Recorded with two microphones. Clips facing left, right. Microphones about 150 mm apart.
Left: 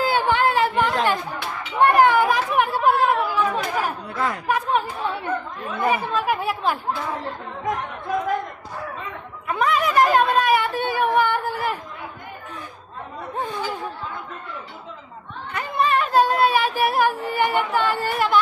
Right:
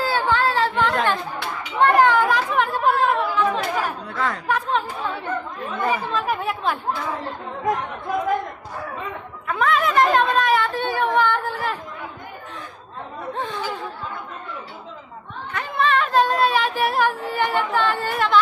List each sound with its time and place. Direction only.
0.0 s chatter: 15° left (ahead or behind)
4.1 s a child's voice: 5° left (ahead or behind)
9.5 s a child's voice: centre (ahead or behind)
13.3 s a child's voice: 10° left (ahead or behind)
15.5 s speech: 5° left (ahead or behind)